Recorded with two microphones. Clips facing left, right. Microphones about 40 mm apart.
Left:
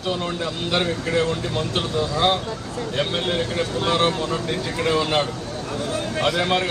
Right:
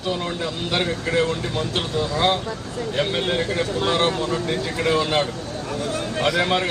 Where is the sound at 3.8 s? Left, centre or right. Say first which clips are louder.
Left 1 dB; centre.